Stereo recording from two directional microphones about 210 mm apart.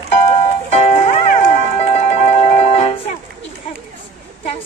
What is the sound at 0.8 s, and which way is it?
Music, 30° left (ahead or behind).